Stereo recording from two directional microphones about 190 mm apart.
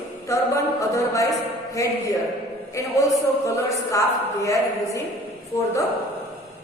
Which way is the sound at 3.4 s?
15° left (ahead or behind).